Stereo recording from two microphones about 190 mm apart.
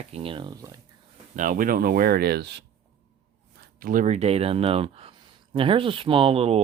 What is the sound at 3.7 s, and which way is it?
Speech, 45° right (ahead or behind).